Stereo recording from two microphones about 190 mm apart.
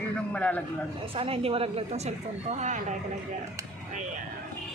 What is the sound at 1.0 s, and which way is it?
A woman's voice, 30° right (ahead or behind).